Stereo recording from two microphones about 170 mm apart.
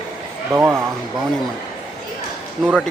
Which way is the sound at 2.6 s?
Centre (ahead or behind).